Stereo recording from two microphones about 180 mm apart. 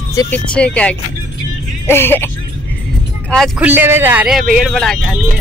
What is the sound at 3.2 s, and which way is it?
Speech, centre (ahead or behind).